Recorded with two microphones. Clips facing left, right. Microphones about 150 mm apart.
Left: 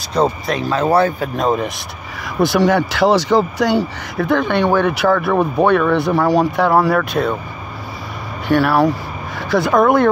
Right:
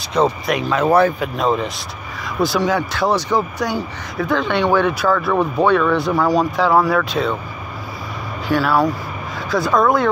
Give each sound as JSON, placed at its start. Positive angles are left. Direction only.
{"t": 0.2, "sound": "speech", "side_deg": 35}
{"t": 1.3, "sound": "speech", "side_deg": 45}
{"t": 2.2, "sound": "speech", "side_deg": 65}
{"t": 4.9, "sound": "speech", "side_deg": 70}
{"t": 5.3, "sound": "speech", "side_deg": 20}
{"t": 5.7, "sound": "speech", "side_deg": 60}
{"t": 6.1, "sound": "speech", "side_deg": 30}
{"t": 7.0, "sound": "speech", "side_deg": 50}
{"t": 8.5, "sound": "speech", "side_deg": 65}